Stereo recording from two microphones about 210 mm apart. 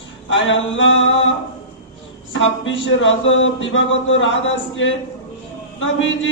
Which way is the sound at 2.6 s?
65° left (ahead or behind).